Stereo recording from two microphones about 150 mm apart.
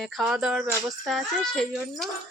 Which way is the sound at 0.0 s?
Centre (ahead or behind).